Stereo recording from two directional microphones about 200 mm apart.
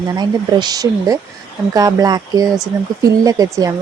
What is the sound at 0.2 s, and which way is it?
A woman's voice, 20° right (ahead or behind).